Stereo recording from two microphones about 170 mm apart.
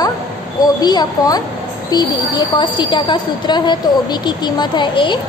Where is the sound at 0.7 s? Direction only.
25° left (ahead or behind).